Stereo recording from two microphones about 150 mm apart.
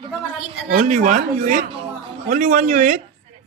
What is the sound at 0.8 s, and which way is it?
Speech, 55° right (ahead or behind).